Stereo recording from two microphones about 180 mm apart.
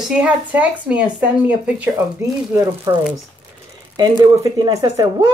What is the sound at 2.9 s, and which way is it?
Speech, 20° right (ahead or behind).